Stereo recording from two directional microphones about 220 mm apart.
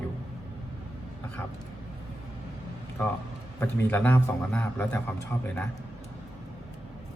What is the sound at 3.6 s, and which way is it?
A man's voice, 10° left (ahead or behind).